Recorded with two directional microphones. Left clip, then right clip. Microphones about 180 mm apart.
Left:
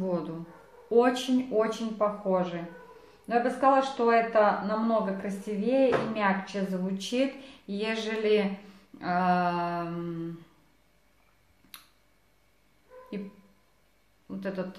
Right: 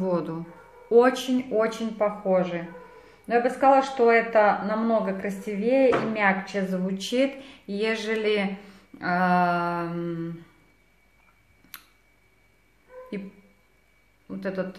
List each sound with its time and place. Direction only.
0.0 s speech: 25° right (ahead or behind)
11.7 s a sound: 25° right (ahead or behind)
14.2 s speech: 20° right (ahead or behind)